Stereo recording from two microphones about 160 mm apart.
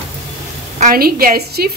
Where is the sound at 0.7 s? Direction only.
60° right (ahead or behind).